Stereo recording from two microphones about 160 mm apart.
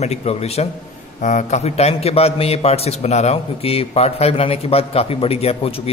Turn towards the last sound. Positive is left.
turn(degrees=40)  # may be behind; listen again after turning